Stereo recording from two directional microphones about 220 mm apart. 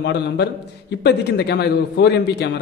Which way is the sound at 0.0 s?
50° left (ahead or behind).